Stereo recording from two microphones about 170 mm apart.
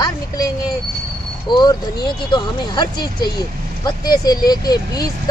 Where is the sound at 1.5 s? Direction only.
25° left (ahead or behind).